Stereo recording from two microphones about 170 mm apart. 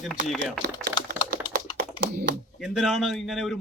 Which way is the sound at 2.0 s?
65° right (ahead or behind).